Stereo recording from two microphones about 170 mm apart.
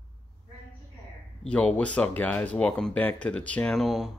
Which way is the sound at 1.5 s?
5° left (ahead or behind).